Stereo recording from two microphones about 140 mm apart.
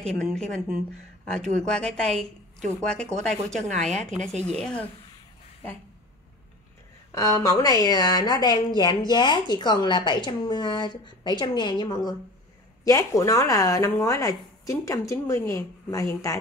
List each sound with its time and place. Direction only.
0.0 s speech: 5° left (ahead or behind)
7.1 s a woman's voice: 25° left (ahead or behind)